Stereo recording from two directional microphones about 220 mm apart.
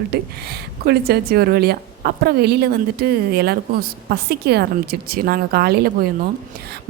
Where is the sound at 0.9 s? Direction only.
45° right (ahead or behind).